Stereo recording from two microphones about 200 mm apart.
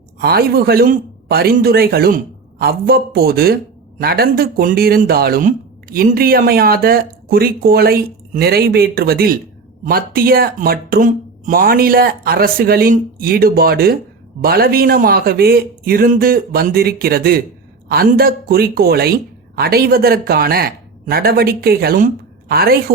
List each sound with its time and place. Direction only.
0.2 s a man's voice: 50° right (ahead or behind)